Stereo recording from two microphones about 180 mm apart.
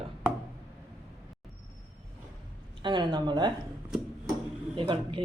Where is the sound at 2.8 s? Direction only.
25° right (ahead or behind).